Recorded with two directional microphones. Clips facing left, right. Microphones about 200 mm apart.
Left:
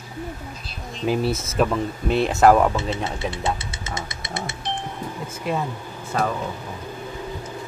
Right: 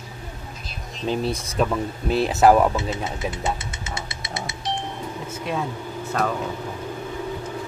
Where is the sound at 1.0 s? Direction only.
5° left (ahead or behind).